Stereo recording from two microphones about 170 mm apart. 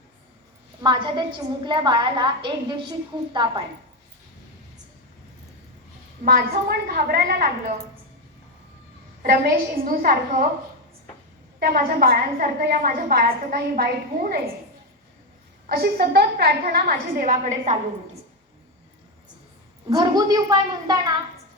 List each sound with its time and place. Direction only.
0.8 s a woman's voice: 25° right (ahead or behind)
6.2 s a woman's voice: 60° right (ahead or behind)
9.2 s a woman's voice: 60° right (ahead or behind)
11.6 s a woman's voice: 60° right (ahead or behind)
15.6 s a woman's voice: 65° right (ahead or behind); by 17.7 s 45° right (ahead or behind)
19.9 s a woman's voice: 20° right (ahead or behind)